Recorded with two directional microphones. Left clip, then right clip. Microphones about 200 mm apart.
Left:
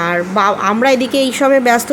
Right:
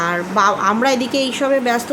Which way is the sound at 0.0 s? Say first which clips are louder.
Left 2 dB; 15° left (ahead or behind).